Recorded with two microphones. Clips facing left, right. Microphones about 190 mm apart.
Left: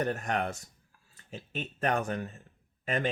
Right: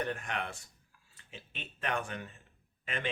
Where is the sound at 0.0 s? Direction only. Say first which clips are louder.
Left 6 dB; 40° left (ahead or behind).